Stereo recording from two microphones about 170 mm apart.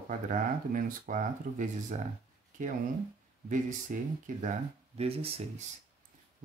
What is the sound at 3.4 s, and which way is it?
Speech, 50° right (ahead or behind).